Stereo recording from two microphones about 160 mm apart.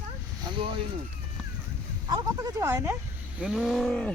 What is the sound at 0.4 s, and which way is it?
Boat, 30° right (ahead or behind).